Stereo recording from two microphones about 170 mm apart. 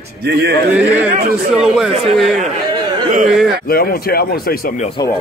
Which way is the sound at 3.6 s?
60° left (ahead or behind).